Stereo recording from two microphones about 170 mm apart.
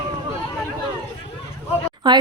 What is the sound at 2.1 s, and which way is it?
Speech, 25° right (ahead or behind).